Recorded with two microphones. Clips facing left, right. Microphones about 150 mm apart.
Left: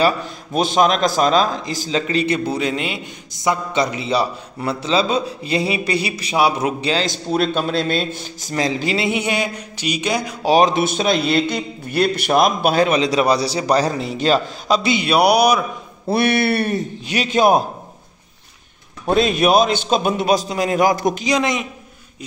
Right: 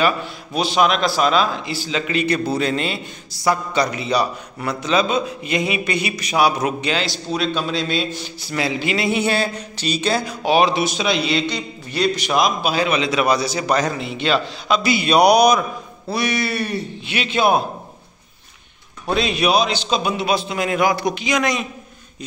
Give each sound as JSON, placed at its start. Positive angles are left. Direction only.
{"t": 0.6, "sound": "a man's voice", "side_deg": 45}
{"t": 2.3, "sound": "a man's voice", "side_deg": 15}
{"t": 7.5, "sound": "a man's voice", "side_deg": 50}
{"t": 8.9, "sound": "speech", "side_deg": 20}
{"t": 10.4, "sound": "a man's voice", "side_deg": 40}
{"t": 14.8, "sound": "a man's voice", "side_deg": 20}
{"t": 15.0, "sound": "speech", "side_deg": 10}
{"t": 16.1, "sound": "a man's voice", "side_deg": 60}
{"t": 19.0, "sound": "a man's voice", "side_deg": 45}
{"t": 21.4, "sound": "a man's voice", "side_deg": 25}